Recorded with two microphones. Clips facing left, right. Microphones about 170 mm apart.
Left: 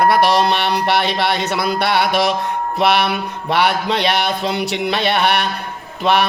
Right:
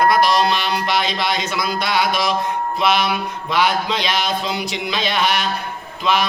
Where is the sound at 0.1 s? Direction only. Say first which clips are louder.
Left 2 dB; 65° left (ahead or behind).